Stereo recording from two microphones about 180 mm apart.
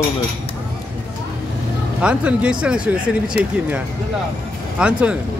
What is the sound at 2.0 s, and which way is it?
Speech, 5° right (ahead or behind).